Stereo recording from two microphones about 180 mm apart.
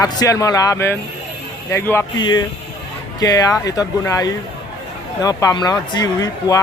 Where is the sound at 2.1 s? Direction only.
25° left (ahead or behind).